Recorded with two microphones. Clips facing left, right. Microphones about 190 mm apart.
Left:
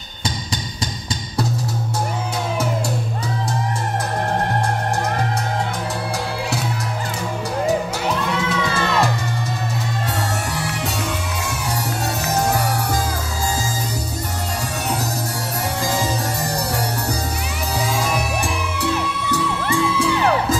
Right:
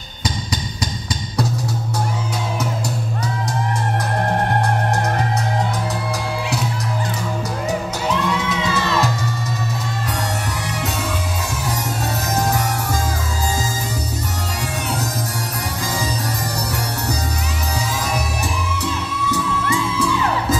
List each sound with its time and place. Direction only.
19.2 s music: 65° left (ahead or behind)